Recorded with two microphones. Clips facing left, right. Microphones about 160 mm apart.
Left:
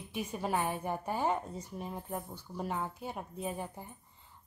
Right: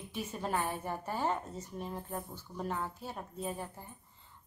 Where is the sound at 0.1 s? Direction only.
15° left (ahead or behind).